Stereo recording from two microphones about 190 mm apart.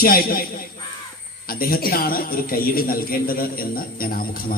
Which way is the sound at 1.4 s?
50° left (ahead or behind).